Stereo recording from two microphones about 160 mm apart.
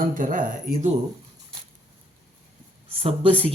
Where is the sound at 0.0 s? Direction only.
55° right (ahead or behind).